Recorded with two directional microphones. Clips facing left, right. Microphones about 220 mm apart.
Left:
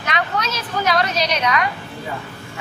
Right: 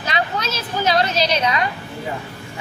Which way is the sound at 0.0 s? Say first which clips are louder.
Even; 30° right (ahead or behind).